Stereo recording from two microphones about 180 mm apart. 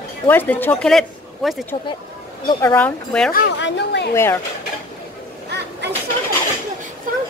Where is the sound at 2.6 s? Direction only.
10° left (ahead or behind).